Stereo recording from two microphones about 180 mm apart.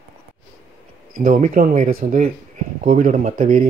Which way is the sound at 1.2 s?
50° right (ahead or behind).